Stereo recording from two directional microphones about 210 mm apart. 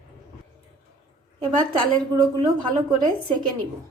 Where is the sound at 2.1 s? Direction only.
20° right (ahead or behind).